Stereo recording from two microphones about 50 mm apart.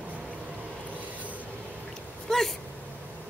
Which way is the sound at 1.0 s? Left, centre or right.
Right.